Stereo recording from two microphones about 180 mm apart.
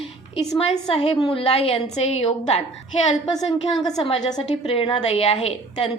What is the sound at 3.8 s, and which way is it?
A woman's voice, 25° left (ahead or behind).